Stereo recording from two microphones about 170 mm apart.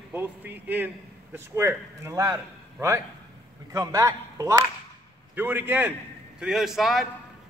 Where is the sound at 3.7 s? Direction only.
20° right (ahead or behind).